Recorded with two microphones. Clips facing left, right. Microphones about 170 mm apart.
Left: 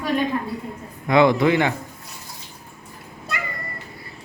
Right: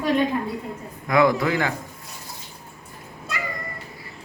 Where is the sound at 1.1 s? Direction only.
25° left (ahead or behind).